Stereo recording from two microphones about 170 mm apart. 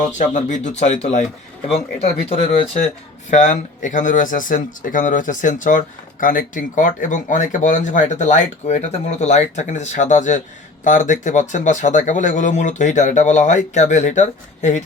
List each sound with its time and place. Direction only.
0.2 s speech: 45° left (ahead or behind)